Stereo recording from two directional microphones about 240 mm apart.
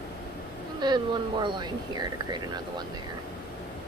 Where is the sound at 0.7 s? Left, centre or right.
Centre.